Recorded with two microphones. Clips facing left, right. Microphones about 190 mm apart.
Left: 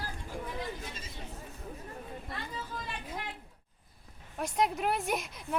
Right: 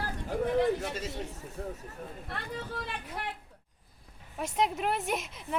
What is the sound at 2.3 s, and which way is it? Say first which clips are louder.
Speech: right 4 dB; 65° right (ahead or behind).